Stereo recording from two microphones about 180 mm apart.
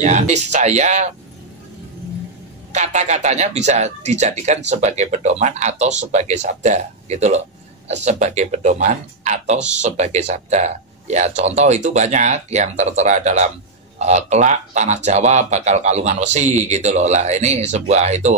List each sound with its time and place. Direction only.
0.0 s speech: 40° right (ahead or behind)
2.7 s speech: 40° right (ahead or behind)